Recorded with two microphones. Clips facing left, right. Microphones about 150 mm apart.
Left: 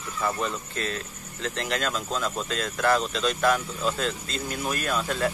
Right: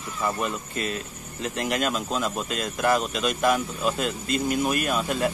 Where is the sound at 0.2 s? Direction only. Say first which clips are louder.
Right 1 dB; 15° right (ahead or behind).